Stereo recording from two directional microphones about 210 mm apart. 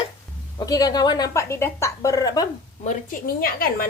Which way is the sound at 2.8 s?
40° left (ahead or behind).